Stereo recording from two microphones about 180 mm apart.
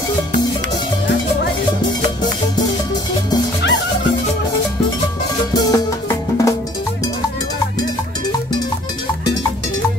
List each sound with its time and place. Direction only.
5.5 s music: 20° left (ahead or behind)